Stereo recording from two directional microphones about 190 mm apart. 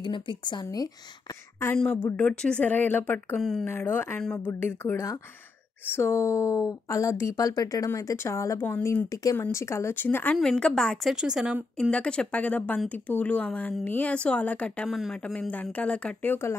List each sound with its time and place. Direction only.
0.0 s speech: 25° left (ahead or behind)
1.8 s speech: 10° left (ahead or behind)
3.7 s speech: 10° left (ahead or behind)